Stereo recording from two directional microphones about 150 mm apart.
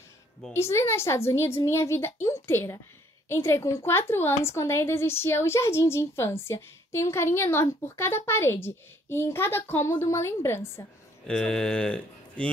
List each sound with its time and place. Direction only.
0.5 s speech: 20° left (ahead or behind)
11.2 s speech: 5° left (ahead or behind)